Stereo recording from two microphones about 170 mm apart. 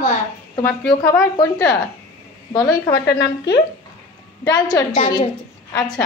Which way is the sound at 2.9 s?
75° left (ahead or behind).